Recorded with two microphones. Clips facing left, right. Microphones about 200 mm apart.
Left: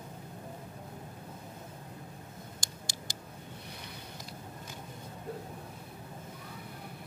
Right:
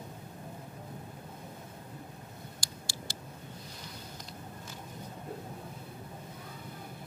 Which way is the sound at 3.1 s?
15° left (ahead or behind).